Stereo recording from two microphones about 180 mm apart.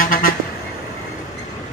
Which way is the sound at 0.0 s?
50° left (ahead or behind).